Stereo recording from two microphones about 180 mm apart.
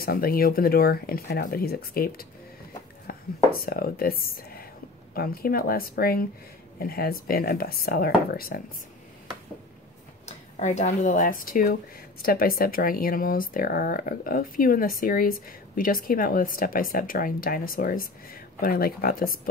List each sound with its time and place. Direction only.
0.0 s speech: 55° left (ahead or behind)
10.2 s speech: 40° left (ahead or behind)